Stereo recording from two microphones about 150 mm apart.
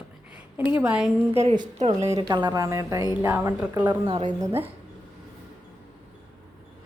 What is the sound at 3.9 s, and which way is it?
Speech, 30° right (ahead or behind).